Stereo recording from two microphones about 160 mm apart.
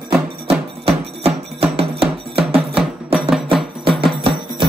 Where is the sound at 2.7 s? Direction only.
5° right (ahead or behind).